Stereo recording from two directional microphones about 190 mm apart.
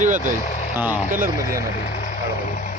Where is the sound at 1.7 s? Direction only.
45° left (ahead or behind).